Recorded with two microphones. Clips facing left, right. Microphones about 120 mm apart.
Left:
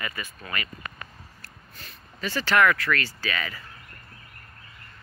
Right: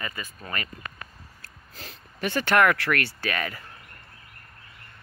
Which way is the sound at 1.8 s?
90° right.